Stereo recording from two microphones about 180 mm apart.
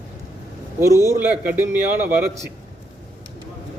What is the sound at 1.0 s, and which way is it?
A man's voice, 15° right (ahead or behind).